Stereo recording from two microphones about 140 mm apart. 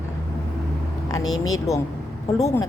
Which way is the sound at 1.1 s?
25° left (ahead or behind).